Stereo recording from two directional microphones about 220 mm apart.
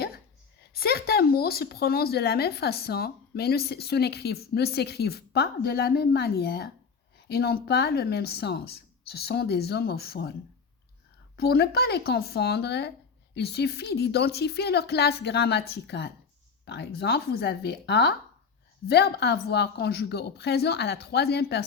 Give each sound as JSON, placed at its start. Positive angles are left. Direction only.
{"t": 0.7, "sound": "speech", "side_deg": 45}
{"t": 11.3, "sound": "speech", "side_deg": 45}